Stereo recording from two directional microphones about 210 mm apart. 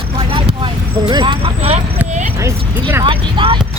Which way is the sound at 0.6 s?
20° right (ahead or behind).